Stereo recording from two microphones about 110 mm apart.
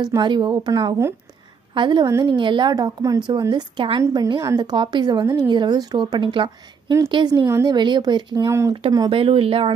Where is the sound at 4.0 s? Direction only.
30° right (ahead or behind).